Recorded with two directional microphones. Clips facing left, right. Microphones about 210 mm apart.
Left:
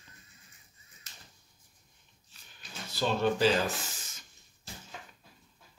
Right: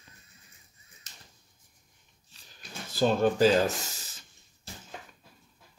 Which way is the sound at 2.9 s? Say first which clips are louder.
Right 4 dB; 45° right (ahead or behind).